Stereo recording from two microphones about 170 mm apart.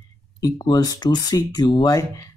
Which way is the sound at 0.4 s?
20° left (ahead or behind).